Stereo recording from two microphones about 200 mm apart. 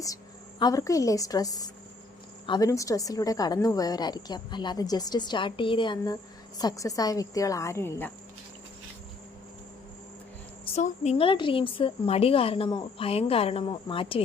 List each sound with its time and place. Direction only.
0.6 s a woman's voice: 15° left (ahead or behind)
10.8 s a woman's voice: 35° left (ahead or behind)